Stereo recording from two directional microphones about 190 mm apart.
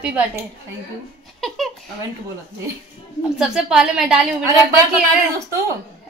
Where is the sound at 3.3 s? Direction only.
5° right (ahead or behind).